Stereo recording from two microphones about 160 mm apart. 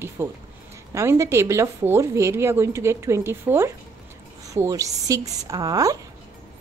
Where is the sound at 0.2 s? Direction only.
15° right (ahead or behind).